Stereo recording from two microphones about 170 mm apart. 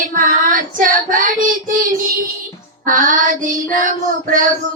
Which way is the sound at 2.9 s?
55° right (ahead or behind).